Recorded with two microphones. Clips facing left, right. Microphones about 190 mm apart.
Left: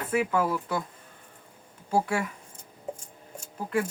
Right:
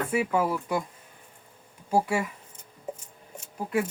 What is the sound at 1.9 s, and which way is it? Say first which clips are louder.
Speech: right 1 dB; 10° right (ahead or behind).